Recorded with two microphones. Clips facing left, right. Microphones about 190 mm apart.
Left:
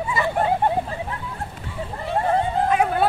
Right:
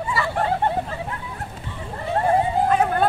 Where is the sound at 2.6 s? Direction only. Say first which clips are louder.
Even; 10° left (ahead or behind).